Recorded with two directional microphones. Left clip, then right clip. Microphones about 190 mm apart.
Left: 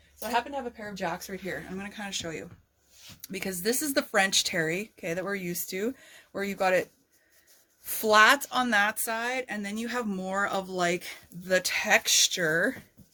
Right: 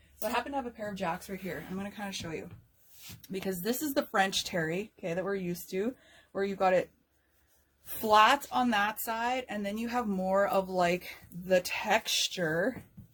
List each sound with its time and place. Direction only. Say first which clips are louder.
0.2 s speech: left 3 dB; 20° left (ahead or behind)
8.0 s speech: left 3 dB; 30° left (ahead or behind)